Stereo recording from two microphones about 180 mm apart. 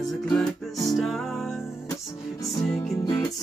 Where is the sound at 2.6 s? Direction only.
Centre (ahead or behind).